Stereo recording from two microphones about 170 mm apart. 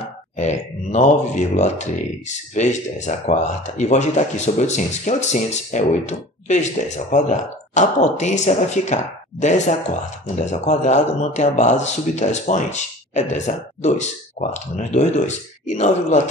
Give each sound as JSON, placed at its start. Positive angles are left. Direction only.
{"t": 0.0, "sound": "speech", "side_deg": 40}